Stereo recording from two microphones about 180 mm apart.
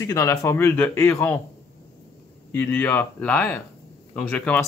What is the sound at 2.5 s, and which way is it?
Speech, 10° left (ahead or behind).